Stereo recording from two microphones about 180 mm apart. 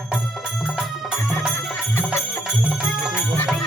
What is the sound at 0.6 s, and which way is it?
Music, 5° right (ahead or behind).